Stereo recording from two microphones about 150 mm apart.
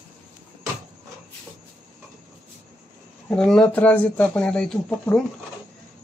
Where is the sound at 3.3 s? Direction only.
5° left (ahead or behind).